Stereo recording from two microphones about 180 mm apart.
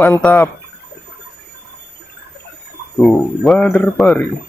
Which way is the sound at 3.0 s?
Centre (ahead or behind).